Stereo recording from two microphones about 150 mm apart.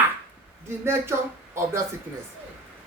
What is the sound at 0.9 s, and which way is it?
Speech, 15° right (ahead or behind).